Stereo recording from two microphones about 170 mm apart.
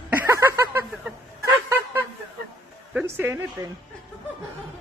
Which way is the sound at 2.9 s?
10° right (ahead or behind).